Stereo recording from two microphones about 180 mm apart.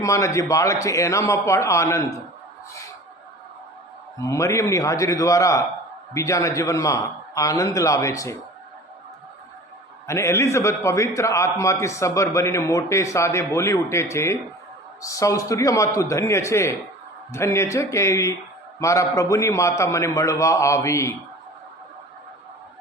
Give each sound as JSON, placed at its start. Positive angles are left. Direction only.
{"t": 0.0, "sound": "a man's voice", "side_deg": 15}
{"t": 4.2, "sound": "a man's voice", "side_deg": 15}
{"t": 10.1, "sound": "a man's voice", "side_deg": 15}